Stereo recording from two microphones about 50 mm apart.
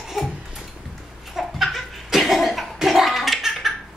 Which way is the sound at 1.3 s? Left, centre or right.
Centre.